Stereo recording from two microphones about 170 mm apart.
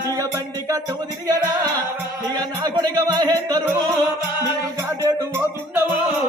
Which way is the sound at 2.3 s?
25° right (ahead or behind).